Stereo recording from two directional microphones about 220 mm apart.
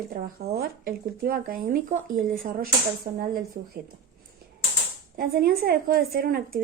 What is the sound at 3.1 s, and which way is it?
Speech, 25° right (ahead or behind).